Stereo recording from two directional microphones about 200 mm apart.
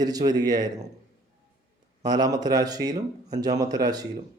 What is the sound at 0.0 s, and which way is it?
Speech, 20° right (ahead or behind).